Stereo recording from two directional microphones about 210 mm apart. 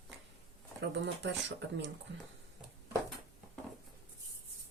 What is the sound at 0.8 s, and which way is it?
Speech, 60° right (ahead or behind).